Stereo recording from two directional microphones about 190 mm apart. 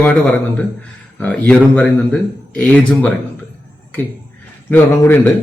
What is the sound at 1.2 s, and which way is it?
A man's voice, 5° left (ahead or behind).